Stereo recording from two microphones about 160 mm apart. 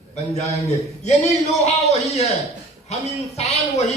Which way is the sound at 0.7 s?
45° left (ahead or behind).